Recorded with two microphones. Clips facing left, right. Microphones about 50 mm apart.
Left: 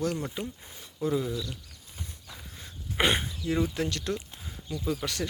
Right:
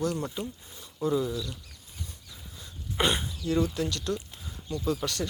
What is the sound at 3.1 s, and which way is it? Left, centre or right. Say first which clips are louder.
Speech: even; left.